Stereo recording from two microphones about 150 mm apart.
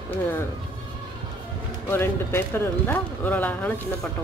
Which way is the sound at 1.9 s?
15° left (ahead or behind).